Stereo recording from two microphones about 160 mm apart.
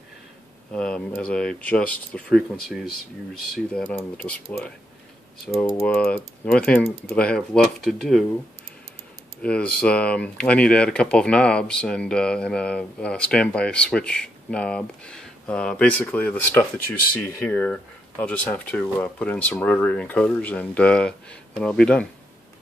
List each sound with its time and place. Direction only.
0.7 s speech: 5° left (ahead or behind)
9.4 s speech: 5° left (ahead or behind)